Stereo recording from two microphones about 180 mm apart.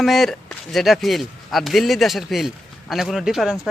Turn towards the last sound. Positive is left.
turn(degrees=-5)  # may be behind; listen again after turning